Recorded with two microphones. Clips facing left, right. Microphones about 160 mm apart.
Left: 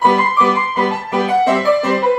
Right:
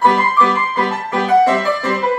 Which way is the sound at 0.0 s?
15° left (ahead or behind).